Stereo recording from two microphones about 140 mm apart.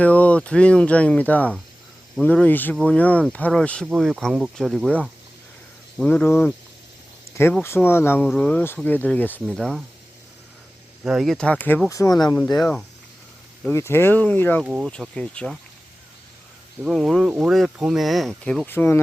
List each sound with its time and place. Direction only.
0.0 s speech: 10° left (ahead or behind)
7.6 s speech: 15° left (ahead or behind)
11.0 s speech: 5° right (ahead or behind); by 12.4 s 25° left (ahead or behind)
13.7 s speech: 15° left (ahead or behind)
14.6 s speech: 5° right (ahead or behind)
14.8 s speech: 5° left (ahead or behind)
16.8 s speech: centre (ahead or behind)